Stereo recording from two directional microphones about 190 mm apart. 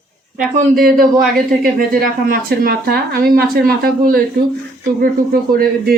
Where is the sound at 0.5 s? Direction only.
50° right (ahead or behind).